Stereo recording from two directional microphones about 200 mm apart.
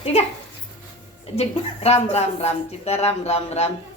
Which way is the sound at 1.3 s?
30° left (ahead or behind).